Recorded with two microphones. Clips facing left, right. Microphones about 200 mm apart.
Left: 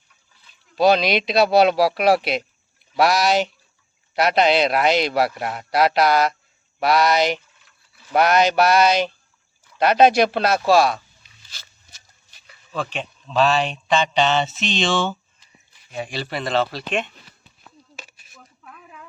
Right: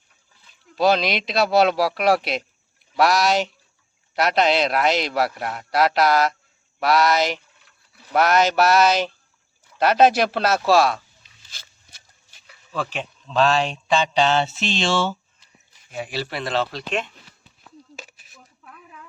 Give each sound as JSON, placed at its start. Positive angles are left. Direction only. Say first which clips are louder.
{"t": 0.8, "sound": "speech", "louder": "left 3 dB", "side_deg": 0}
{"t": 11.5, "sound": "a sound", "louder": "even", "side_deg": -55}
{"t": 12.5, "sound": "speech", "louder": "even", "side_deg": -5}